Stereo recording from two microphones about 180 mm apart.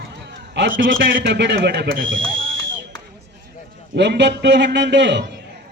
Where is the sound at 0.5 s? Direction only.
75° right (ahead or behind).